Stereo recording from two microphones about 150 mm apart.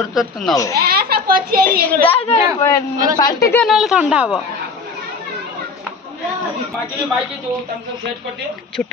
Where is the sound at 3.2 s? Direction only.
25° left (ahead or behind).